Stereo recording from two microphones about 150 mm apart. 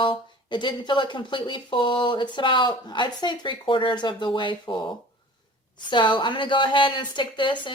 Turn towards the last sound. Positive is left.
turn(degrees=30)  # may be behind; listen again after turning